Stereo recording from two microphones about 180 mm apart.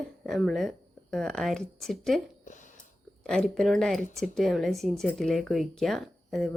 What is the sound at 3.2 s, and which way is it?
A woman's voice, 5° left (ahead or behind).